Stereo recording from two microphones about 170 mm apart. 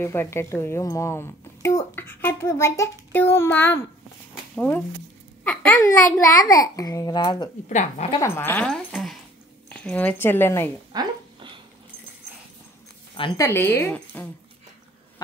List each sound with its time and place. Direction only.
0.0 s a woman's voice: 15° left (ahead or behind)
5.8 s a child's voice: 20° left (ahead or behind)
7.7 s speech: 40° left (ahead or behind)
8.2 s speech: 15° left (ahead or behind)
8.9 s a sound: centre (ahead or behind)
9.7 s speech: 5° left (ahead or behind)
10.9 s a sound: 25° right (ahead or behind)
13.1 s speech: 30° left (ahead or behind)
13.4 s speech: 15° left (ahead or behind)